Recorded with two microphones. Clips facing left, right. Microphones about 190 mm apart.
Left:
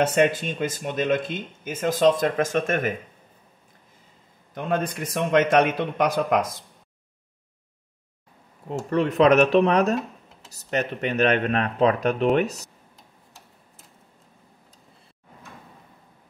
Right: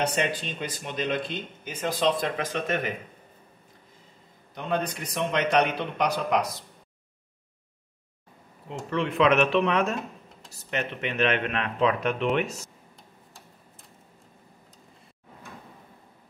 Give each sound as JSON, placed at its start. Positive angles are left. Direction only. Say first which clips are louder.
{"t": 0.0, "sound": "speech", "louder": "left 7 dB", "side_deg": 50}
{"t": 4.6, "sound": "speech", "louder": "left 3 dB", "side_deg": 50}
{"t": 8.9, "sound": "speech", "louder": "left 5 dB", "side_deg": 40}